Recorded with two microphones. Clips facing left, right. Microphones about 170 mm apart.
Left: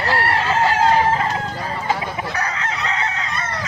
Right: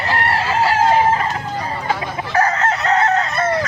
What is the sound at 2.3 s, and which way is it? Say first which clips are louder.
Chicken: right 8 dB; 50° right (ahead or behind).